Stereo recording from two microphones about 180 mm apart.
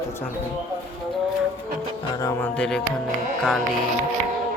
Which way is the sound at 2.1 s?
15° left (ahead or behind).